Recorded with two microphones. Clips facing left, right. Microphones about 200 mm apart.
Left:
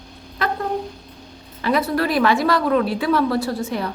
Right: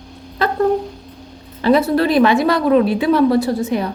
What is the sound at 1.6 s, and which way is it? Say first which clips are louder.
A woman's voice: right 6 dB; 30° right (ahead or behind).